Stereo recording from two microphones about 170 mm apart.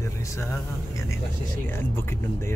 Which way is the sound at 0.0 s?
15° left (ahead or behind).